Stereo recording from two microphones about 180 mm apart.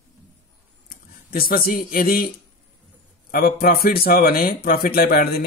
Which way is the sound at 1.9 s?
55° left (ahead or behind).